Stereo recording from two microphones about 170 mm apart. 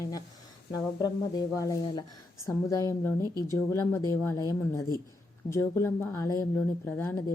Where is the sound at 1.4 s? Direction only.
20° left (ahead or behind).